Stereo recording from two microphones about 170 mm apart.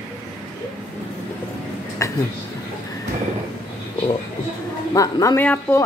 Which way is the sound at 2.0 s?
20° left (ahead or behind).